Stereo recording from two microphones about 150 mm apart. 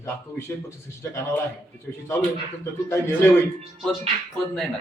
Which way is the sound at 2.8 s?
15° left (ahead or behind).